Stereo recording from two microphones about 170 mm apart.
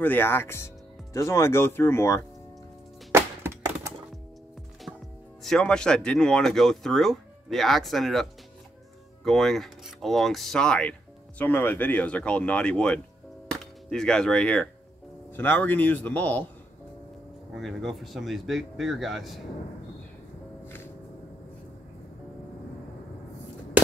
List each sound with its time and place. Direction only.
0.0 s speech: 10° left (ahead or behind)
3.1 s music: 15° right (ahead or behind)
5.4 s speech: 5° left (ahead or behind)
13.5 s whip: 5° left (ahead or behind)
15.3 s speech: 10° left (ahead or behind)
17.6 s speech: centre (ahead or behind)
20.6 s music: 10° left (ahead or behind)